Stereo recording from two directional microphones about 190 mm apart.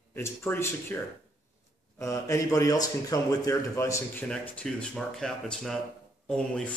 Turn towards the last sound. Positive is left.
turn(degrees=5)  # may be behind; listen again after turning